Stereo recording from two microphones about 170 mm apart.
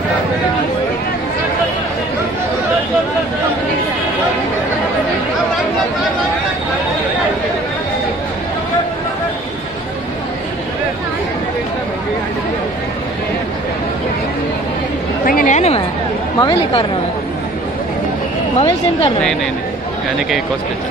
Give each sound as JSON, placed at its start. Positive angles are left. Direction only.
{"t": 15.2, "sound": "a sound", "side_deg": 50}
{"t": 16.3, "sound": "a woman's voice", "side_deg": 25}
{"t": 18.6, "sound": "speech", "side_deg": 35}